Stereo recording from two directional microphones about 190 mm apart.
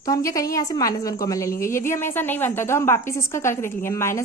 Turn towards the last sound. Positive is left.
turn(degrees=15)  # may be behind; listen again after turning